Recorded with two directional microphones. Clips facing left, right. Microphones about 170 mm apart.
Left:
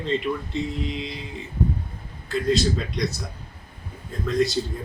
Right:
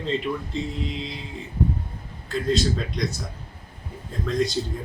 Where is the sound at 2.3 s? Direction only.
Centre (ahead or behind).